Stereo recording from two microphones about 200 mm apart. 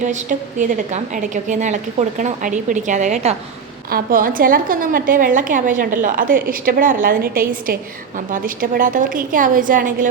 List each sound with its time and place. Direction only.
0.0 s a woman's voice: 35° right (ahead or behind)